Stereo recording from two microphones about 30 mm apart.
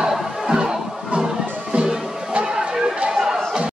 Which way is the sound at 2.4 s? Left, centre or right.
Right.